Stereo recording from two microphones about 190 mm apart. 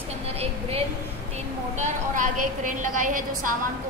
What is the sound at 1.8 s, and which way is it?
A woman's voice, 40° right (ahead or behind).